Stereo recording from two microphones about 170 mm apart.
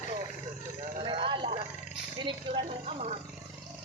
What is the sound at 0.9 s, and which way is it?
Vehicle, 30° right (ahead or behind).